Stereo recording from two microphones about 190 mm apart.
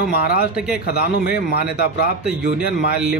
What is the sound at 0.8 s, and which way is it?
A man's voice, 55° left (ahead or behind).